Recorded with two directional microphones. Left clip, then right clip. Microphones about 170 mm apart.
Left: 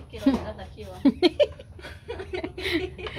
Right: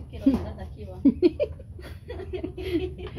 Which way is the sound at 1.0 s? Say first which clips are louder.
Left 2 dB; 10° left (ahead or behind).